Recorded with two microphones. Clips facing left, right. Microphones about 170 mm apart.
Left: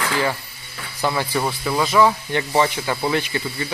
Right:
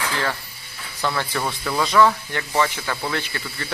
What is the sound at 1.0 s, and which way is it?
Speech, 15° left (ahead or behind).